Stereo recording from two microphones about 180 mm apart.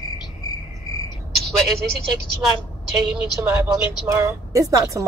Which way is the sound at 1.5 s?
Centre (ahead or behind).